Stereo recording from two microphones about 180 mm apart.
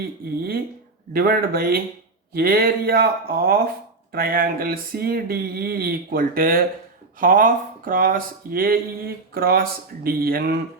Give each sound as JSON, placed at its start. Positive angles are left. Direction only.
{"t": 1.1, "sound": "speech", "side_deg": -55}